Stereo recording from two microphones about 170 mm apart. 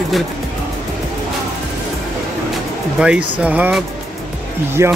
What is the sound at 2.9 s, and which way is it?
Speech, 5° right (ahead or behind).